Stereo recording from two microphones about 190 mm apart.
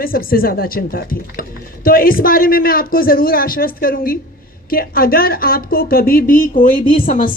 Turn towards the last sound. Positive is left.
turn(degrees=45)  # may be behind; listen again after turning